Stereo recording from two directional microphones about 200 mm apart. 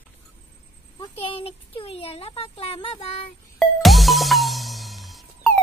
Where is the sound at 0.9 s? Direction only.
25° left (ahead or behind).